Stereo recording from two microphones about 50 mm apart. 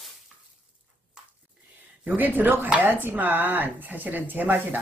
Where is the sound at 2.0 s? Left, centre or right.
Right.